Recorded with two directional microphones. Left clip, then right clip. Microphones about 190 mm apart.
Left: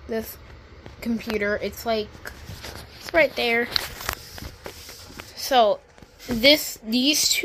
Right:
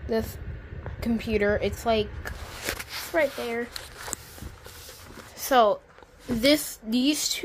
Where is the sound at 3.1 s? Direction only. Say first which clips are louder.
Left 6 dB; 10° left (ahead or behind).